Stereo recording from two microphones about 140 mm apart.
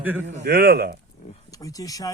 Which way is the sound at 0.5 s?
90° right.